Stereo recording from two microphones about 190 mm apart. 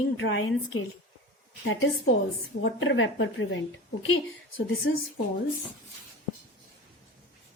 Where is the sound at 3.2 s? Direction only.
85° left.